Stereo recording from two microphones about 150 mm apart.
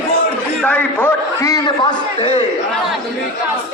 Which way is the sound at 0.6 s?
10° left (ahead or behind).